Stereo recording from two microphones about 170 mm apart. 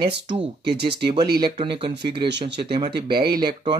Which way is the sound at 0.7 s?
75° right (ahead or behind).